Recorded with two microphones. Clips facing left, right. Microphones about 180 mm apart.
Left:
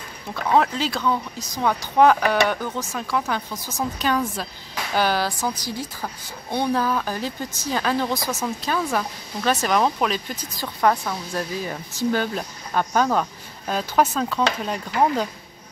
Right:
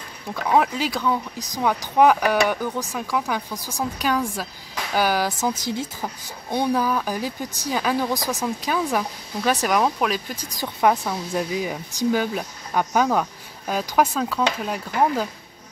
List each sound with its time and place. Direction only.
0.3 s speech: 10° right (ahead or behind)
5.4 s a woman's voice: 25° right (ahead or behind)
6.0 s speech: 10° right (ahead or behind)